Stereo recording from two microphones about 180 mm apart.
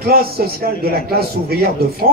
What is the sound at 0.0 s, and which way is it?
Music, 60° right (ahead or behind).